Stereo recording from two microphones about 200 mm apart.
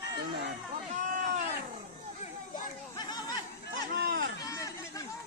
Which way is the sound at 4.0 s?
50° right (ahead or behind).